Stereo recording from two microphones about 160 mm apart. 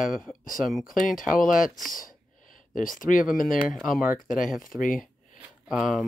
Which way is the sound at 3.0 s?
55° left (ahead or behind).